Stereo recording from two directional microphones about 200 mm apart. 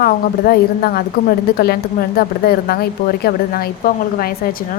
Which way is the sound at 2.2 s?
50° left (ahead or behind).